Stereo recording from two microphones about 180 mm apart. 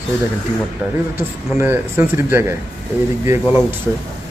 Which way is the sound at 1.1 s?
15° right (ahead or behind).